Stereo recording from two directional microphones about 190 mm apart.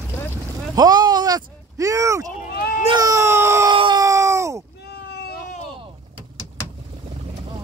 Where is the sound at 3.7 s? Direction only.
25° right (ahead or behind).